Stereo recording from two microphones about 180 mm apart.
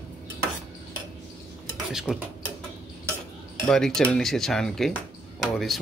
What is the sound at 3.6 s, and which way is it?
Speech, 5° left (ahead or behind).